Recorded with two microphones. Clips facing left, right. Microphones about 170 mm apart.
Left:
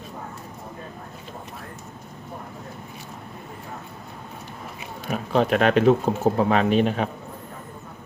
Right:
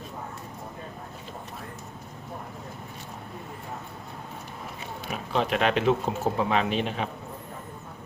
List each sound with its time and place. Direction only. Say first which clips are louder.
5.1 s speech: left 6 dB; 45° left (ahead or behind)